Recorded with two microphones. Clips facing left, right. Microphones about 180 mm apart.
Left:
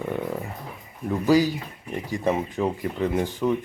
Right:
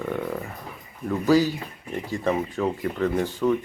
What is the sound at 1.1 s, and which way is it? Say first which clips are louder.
Speech: even; 15° left (ahead or behind).